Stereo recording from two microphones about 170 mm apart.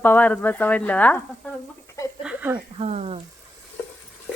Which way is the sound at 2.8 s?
35° right (ahead or behind).